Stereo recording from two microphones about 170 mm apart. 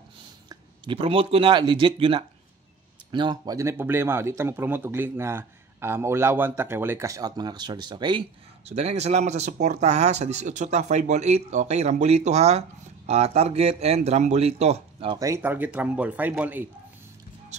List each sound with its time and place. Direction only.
0.5 s speech: 30° right (ahead or behind)
8.6 s speech: 40° right (ahead or behind)
15.1 s speech: 15° right (ahead or behind)